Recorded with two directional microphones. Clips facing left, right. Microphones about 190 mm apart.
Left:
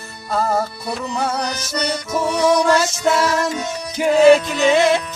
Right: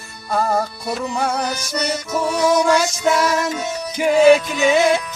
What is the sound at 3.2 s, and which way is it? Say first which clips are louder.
Music: even; 15° right (ahead or behind).